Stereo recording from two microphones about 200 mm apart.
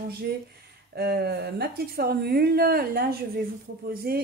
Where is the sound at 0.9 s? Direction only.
55° right (ahead or behind).